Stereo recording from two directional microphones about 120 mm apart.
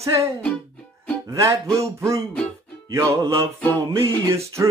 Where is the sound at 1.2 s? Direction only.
25° right (ahead or behind).